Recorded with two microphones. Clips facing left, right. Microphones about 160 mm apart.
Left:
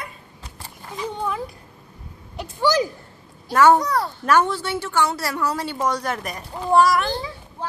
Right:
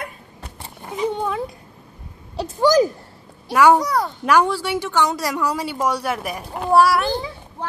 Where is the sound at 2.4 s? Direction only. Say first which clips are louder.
Right 5 dB; 40° right (ahead or behind).